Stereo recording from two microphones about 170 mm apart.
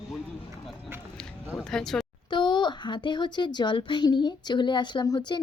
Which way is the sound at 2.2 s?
25° left (ahead or behind).